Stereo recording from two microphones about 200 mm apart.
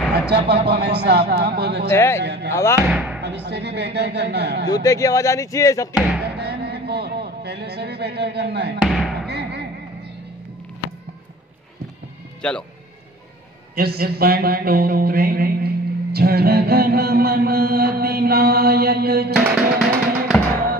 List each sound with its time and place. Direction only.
0.3 s speech: 55° right (ahead or behind)
1.9 s speech: 15° left (ahead or behind)
2.2 s speech: 60° right (ahead or behind)
2.5 s speech: 15° left (ahead or behind)
2.9 s speech: centre (ahead or behind)
3.2 s speech: 60° right (ahead or behind)
4.6 s speech: 15° left (ahead or behind)
6.2 s a sound: 55° right (ahead or behind)
8.8 s a sound: centre (ahead or behind)
9.3 s a sound: 55° right (ahead or behind)
12.4 s speech: 5° left (ahead or behind)
13.7 s mantra: 50° right (ahead or behind)
19.3 s music: 5° right (ahead or behind)